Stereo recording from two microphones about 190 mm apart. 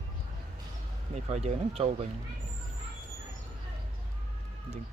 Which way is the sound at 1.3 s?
35° right (ahead or behind).